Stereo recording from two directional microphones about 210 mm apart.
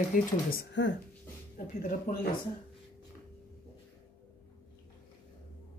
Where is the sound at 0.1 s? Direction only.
45° left (ahead or behind).